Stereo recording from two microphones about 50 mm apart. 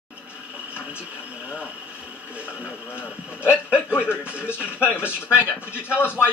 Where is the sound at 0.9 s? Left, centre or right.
Right.